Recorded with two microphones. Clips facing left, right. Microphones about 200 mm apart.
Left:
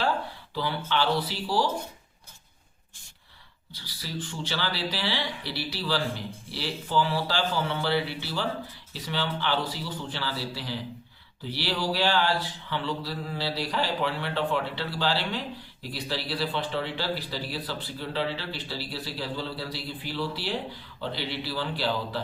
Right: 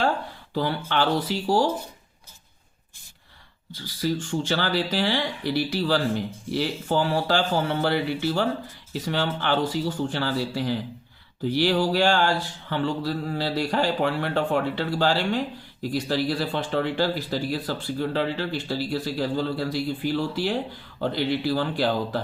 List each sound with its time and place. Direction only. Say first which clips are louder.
0.9 s mantra: right 1 dB; 50° right (ahead or behind)
3.7 s mantra: right 12 dB; 50° right (ahead or behind)